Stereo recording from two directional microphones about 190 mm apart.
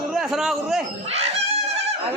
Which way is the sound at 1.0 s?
35° right (ahead or behind).